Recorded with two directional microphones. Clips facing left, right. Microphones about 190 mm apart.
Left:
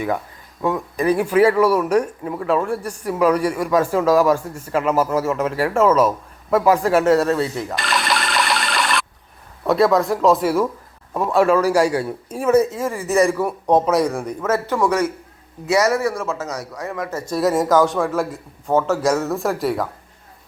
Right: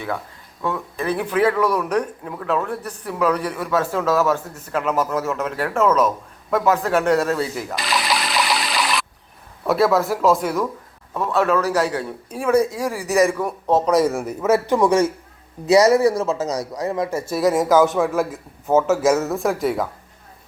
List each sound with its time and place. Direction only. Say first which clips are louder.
0.6 s speech: left 5 dB; 15° left (ahead or behind)
13.8 s a man's voice: right 1 dB; centre (ahead or behind); by 17.1 s 25° right (ahead or behind)
17.1 s speech: left 3 dB; 10° right (ahead or behind)